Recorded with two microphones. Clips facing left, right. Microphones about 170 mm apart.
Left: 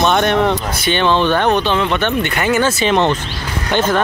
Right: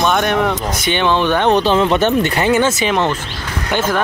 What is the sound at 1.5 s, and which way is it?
Speech, 35° right (ahead or behind).